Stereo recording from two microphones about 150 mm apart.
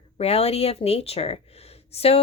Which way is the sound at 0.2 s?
45° left (ahead or behind).